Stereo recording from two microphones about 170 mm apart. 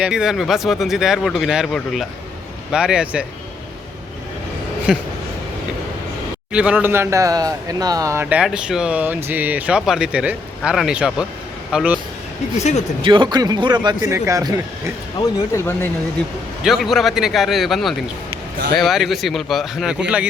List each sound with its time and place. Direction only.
0.0 s speech: 5° right (ahead or behind)
4.9 s speech: 5° right (ahead or behind)
6.5 s speech: 5° right (ahead or behind)
12.5 s speech: 40° left (ahead or behind)
13.0 s speech: 30° right (ahead or behind)
15.2 s speech: 15° left (ahead or behind)
16.6 s speech: centre (ahead or behind)